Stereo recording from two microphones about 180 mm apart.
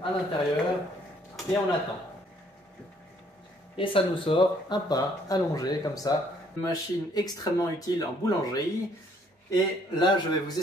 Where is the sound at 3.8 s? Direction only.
30° left (ahead or behind).